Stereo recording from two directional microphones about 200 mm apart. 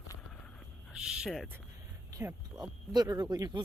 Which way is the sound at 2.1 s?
15° right (ahead or behind).